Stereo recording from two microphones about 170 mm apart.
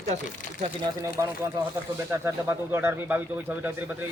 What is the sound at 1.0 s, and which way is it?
Speech, 20° right (ahead or behind).